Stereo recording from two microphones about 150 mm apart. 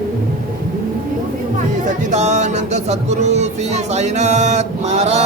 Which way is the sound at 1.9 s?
50° right (ahead or behind).